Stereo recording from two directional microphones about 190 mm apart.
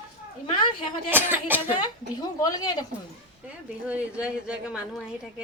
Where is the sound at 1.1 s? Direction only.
10° right (ahead or behind).